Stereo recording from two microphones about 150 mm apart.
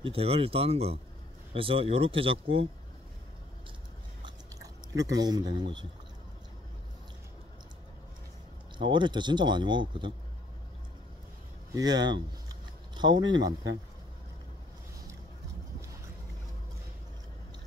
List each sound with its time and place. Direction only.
0.0 s speech: 40° right (ahead or behind)
4.2 s chewing: 25° right (ahead or behind)
8.7 s speech: 30° right (ahead or behind)
11.7 s speech: 25° right (ahead or behind)